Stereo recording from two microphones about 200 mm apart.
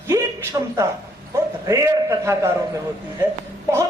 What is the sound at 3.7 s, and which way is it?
Speech, 15° right (ahead or behind).